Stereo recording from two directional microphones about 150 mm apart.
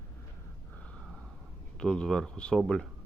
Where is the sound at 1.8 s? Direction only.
5° left (ahead or behind).